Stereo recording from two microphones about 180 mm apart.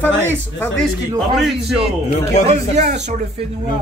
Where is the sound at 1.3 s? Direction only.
Centre (ahead or behind).